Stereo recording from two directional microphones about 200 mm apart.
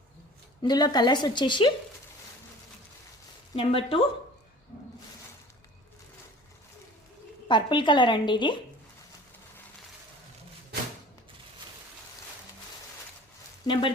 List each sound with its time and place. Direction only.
0.6 s a woman's voice: 20° left (ahead or behind)
3.5 s a woman's voice: 25° left (ahead or behind)
7.4 s a woman's voice: 25° left (ahead or behind)
13.7 s a woman's voice: 20° left (ahead or behind)